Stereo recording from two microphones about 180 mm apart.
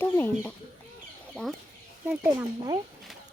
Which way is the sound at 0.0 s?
10° left (ahead or behind).